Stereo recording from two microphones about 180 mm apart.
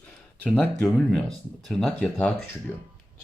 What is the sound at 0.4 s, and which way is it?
Speech, 5° left (ahead or behind).